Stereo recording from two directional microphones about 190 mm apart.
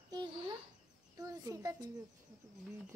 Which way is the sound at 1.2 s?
20° right (ahead or behind).